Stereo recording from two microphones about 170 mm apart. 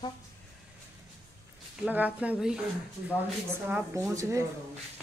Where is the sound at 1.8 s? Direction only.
10° right (ahead or behind).